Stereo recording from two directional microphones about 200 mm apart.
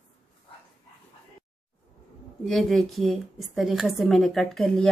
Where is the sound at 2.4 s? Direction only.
Centre (ahead or behind).